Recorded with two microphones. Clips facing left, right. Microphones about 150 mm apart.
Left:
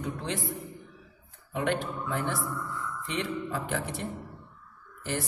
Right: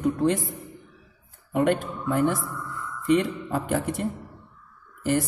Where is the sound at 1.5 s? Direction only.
45° right (ahead or behind).